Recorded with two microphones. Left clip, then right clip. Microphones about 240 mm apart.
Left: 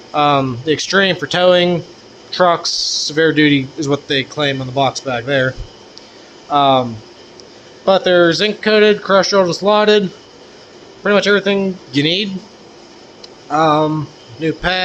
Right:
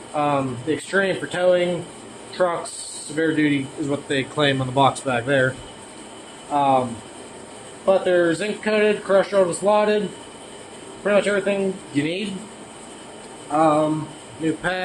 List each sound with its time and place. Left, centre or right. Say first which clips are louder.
0.1 s speech: left 8 dB; left
4.1 s speech: even; left
6.5 s speech: left 6 dB; left
7.9 s speech: left 7 dB; left
11.0 s speech: left 6 dB; left
13.5 s speech: left 5 dB; left
14.4 s a man's voice: left 6 dB; left